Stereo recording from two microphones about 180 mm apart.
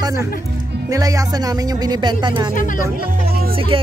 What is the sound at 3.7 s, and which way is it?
Speech, 30° right (ahead or behind).